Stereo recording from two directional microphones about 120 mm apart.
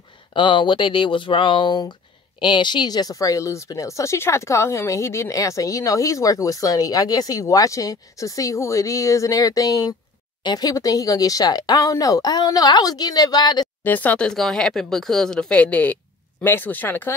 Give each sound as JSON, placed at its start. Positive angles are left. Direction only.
{"t": 0.3, "sound": "speech", "side_deg": 45}
{"t": 13.8, "sound": "speech", "side_deg": 15}